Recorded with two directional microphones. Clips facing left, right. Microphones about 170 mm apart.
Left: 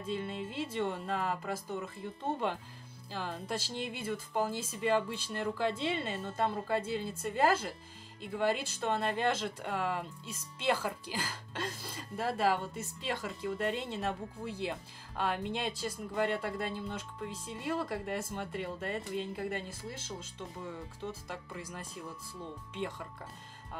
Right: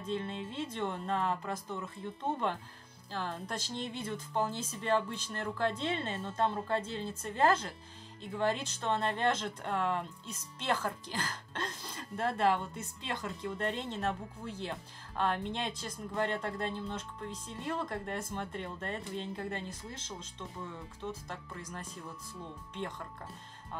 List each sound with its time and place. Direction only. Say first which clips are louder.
0.0 s speech: even; 5° left (ahead or behind)